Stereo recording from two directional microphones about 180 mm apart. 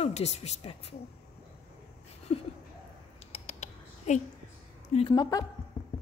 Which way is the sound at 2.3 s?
35° left (ahead or behind).